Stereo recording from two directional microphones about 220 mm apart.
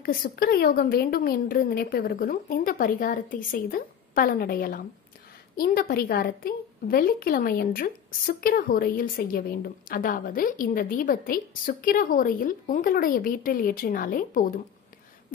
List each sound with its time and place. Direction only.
0.0 s a woman's voice: 40° left (ahead or behind)